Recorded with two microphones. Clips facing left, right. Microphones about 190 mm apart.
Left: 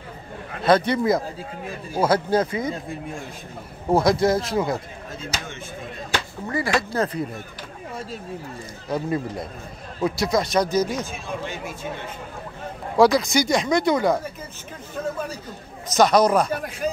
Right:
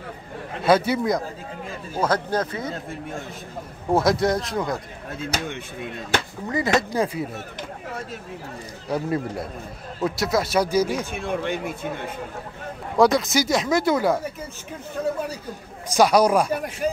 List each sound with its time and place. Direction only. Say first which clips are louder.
0.7 s speech: left 1 dB; 5° right (ahead or behind); by 2.8 s 10° left (ahead or behind)
3.9 s speech: left 1 dB; centre (ahead or behind)
6.5 s speech: right 2 dB; 20° right (ahead or behind)
8.8 s speech: even; 5° right (ahead or behind)
11.1 s speech: right 5 dB; 65° right (ahead or behind)
12.9 s speech: left 1 dB; centre (ahead or behind)
15.9 s speech: even; 10° right (ahead or behind)